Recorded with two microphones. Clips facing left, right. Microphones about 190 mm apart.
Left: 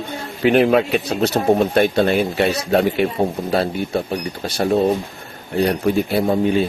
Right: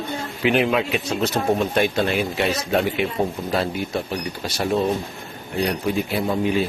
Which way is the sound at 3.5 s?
35° left (ahead or behind).